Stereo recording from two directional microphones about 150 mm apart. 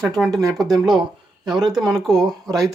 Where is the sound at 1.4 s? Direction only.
Centre (ahead or behind).